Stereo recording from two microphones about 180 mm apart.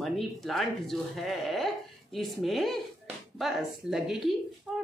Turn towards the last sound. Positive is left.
turn(degrees=0)  # may be behind; listen again after turning